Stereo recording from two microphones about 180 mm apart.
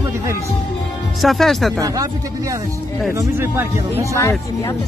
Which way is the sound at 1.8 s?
20° right (ahead or behind).